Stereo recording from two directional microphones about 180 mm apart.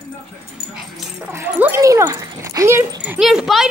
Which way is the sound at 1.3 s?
15° right (ahead or behind).